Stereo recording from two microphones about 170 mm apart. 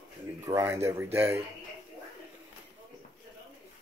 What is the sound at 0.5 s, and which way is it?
Speech, 15° right (ahead or behind).